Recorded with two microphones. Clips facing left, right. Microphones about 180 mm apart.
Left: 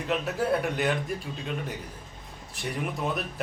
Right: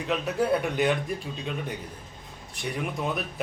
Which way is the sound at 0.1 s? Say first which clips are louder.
Right 2 dB; centre (ahead or behind).